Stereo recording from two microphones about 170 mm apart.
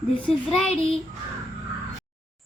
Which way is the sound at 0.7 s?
35° left (ahead or behind).